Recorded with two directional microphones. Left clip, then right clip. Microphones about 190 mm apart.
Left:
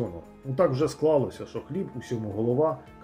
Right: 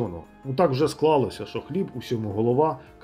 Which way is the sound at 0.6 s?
25° right (ahead or behind).